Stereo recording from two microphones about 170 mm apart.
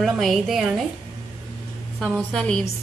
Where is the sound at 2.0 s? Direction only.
5° left (ahead or behind).